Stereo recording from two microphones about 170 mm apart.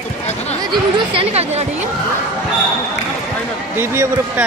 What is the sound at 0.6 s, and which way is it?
Chatter, 30° right (ahead or behind).